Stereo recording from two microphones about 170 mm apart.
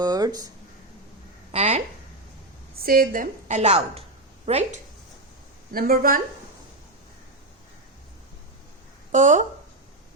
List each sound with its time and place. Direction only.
0.0 s speech: 25° right (ahead or behind)
1.5 s a sound: 45° right (ahead or behind)
2.8 s a woman's voice: 60° right (ahead or behind); by 4.8 s 40° right (ahead or behind)
5.7 s speech: 60° right (ahead or behind)
9.1 s a woman's voice: 45° right (ahead or behind)